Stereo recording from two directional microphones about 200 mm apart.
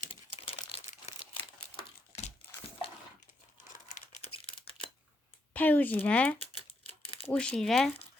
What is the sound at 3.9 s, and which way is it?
Crumpling, 30° left (ahead or behind).